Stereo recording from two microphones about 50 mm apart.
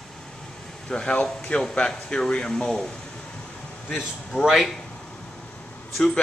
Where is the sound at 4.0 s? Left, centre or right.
Centre.